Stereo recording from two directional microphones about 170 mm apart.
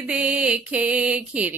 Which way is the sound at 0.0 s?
5° right (ahead or behind).